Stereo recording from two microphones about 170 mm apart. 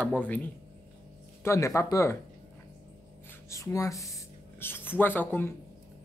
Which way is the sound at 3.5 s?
20° left (ahead or behind).